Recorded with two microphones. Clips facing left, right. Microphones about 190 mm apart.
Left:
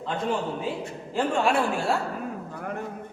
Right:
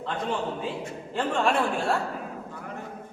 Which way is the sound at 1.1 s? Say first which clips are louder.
Left 1 dB; 5° left (ahead or behind).